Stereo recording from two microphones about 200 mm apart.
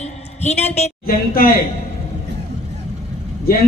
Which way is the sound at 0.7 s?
40° left (ahead or behind).